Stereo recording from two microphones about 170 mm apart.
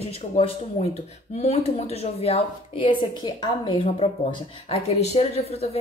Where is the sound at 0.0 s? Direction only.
35° left (ahead or behind).